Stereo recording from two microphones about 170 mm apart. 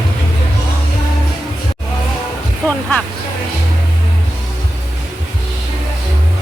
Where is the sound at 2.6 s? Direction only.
10° left (ahead or behind).